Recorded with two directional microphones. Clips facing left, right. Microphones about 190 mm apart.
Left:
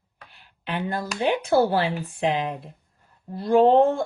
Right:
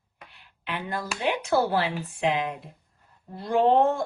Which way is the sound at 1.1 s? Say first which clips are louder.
Left 4 dB; 30° left (ahead or behind).